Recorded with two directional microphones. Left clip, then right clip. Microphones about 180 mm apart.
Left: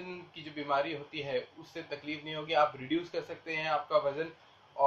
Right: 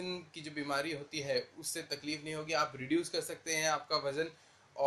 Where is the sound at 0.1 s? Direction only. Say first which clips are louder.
Right 1 dB; 45° right (ahead or behind).